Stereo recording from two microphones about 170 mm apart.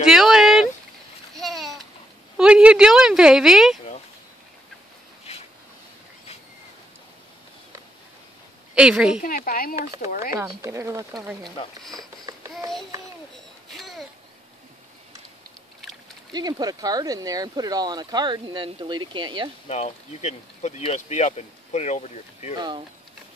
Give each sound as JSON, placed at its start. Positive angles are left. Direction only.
{"t": 0.0, "sound": "a sound", "side_deg": -5}
{"t": 2.3, "sound": "speech", "side_deg": -5}
{"t": 8.7, "sound": "a woman's voice", "side_deg": -5}
{"t": 9.2, "sound": "speech", "side_deg": 55}
{"t": 10.3, "sound": "a woman's voice", "side_deg": -15}
{"t": 11.6, "sound": "speech", "side_deg": 35}
{"t": 12.0, "sound": "babbling", "side_deg": -20}
{"t": 13.7, "sound": "a sound", "side_deg": 0}
{"t": 16.3, "sound": "speech", "side_deg": -25}
{"t": 19.7, "sound": "speech", "side_deg": 40}
{"t": 22.6, "sound": "speech", "side_deg": -25}